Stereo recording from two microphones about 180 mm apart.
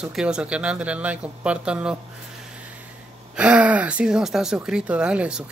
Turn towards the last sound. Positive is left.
turn(degrees=-5)  # may be behind; listen again after turning